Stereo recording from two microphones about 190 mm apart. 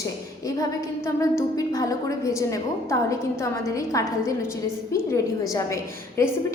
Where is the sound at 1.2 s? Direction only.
15° left (ahead or behind).